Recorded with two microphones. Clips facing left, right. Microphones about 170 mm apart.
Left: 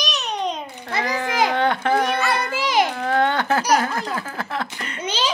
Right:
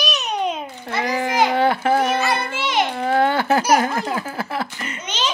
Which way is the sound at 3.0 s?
10° right (ahead or behind).